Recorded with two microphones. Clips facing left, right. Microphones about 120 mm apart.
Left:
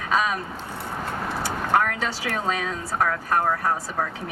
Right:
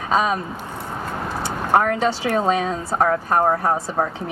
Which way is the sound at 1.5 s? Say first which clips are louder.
Right 5 dB; 30° right (ahead or behind).